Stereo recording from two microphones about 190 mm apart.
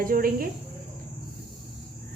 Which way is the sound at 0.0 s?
50° right (ahead or behind).